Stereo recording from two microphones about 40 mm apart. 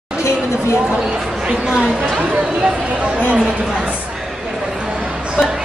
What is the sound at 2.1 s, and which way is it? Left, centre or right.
Speech, right.